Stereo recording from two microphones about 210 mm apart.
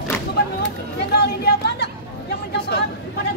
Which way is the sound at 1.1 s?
50° left (ahead or behind).